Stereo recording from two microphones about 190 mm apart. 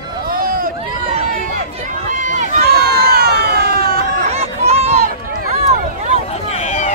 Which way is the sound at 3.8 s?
55° right (ahead or behind).